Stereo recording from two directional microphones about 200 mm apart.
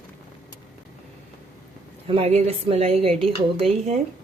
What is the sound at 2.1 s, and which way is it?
A woman's voice, 30° right (ahead or behind).